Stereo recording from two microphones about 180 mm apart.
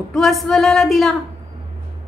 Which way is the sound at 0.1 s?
Centre (ahead or behind).